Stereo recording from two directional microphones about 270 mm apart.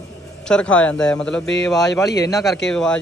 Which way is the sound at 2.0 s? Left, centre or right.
Centre.